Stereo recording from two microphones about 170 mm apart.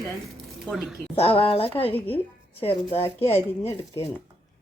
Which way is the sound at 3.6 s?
20° left (ahead or behind).